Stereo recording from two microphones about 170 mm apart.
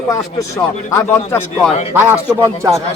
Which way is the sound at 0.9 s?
15° left (ahead or behind).